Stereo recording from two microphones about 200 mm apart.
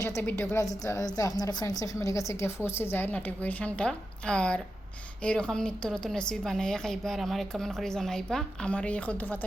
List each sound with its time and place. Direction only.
0.0 s a woman's voice: 15° left (ahead or behind)